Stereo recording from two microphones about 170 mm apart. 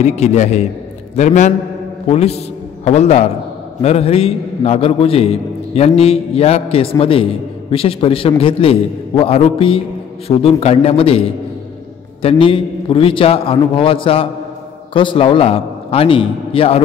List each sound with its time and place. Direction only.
0.0 s a man's voice: 40° left (ahead or behind)